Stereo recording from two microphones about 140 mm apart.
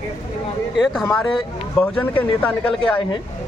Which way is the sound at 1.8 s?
10° left (ahead or behind).